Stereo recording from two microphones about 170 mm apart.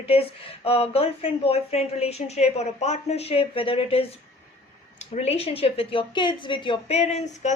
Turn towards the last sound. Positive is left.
turn(degrees=45)  # may be behind; listen again after turning